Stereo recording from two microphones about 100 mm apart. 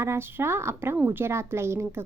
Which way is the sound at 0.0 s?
25° right (ahead or behind).